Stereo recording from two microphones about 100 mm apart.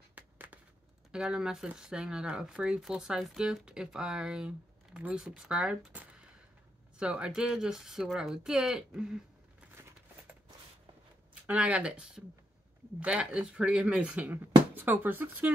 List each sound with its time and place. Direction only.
0.1 s a sound: 15° right (ahead or behind)
1.1 s speech: 5° right (ahead or behind)
7.0 s speech: 10° right (ahead or behind)
11.4 s speech: 10° right (ahead or behind)